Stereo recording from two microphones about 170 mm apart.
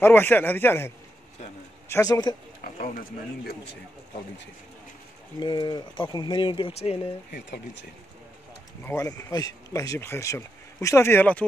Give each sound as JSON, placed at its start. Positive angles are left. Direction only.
{"t": 0.0, "sound": "speech", "side_deg": 15}
{"t": 2.6, "sound": "speech", "side_deg": 55}
{"t": 5.4, "sound": "speech", "side_deg": 25}
{"t": 7.2, "sound": "speech", "side_deg": 85}
{"t": 8.8, "sound": "speech", "side_deg": 20}